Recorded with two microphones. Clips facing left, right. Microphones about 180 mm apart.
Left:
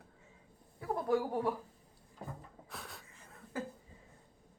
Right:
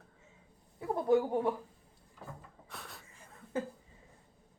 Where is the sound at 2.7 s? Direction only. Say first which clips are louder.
Even; centre (ahead or behind).